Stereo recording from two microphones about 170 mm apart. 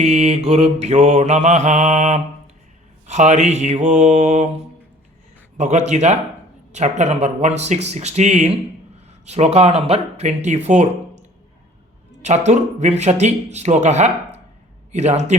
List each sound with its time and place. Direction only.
0.0 s mantra: 40° right (ahead or behind)
12.2 s mantra: 40° right (ahead or behind)